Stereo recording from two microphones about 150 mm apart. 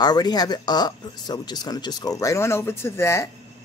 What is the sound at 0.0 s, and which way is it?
Speech, 25° left (ahead or behind).